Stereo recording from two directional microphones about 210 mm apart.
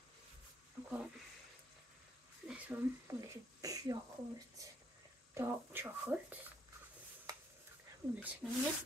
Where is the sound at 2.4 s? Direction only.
5° right (ahead or behind).